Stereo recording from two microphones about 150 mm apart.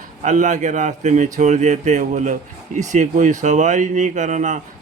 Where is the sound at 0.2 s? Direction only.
55° right (ahead or behind).